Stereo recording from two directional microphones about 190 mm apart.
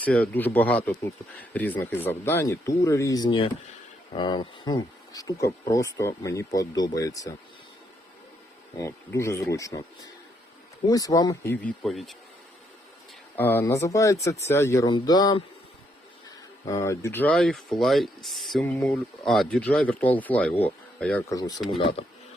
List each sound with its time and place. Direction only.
0.0 s speech: 10° left (ahead or behind)
8.8 s speech: 15° left (ahead or behind)
10.8 s speech: 20° left (ahead or behind)
11.5 s speech: 5° left (ahead or behind)
13.3 s speech: 10° left (ahead or behind)
16.6 s speech: 15° left (ahead or behind)